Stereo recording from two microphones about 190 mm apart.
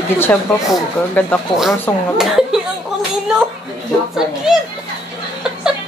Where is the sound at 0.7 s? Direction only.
5° left (ahead or behind).